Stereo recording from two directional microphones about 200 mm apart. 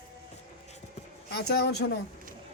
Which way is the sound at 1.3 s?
55° left (ahead or behind).